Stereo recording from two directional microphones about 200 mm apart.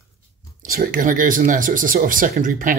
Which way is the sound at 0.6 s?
45° right (ahead or behind).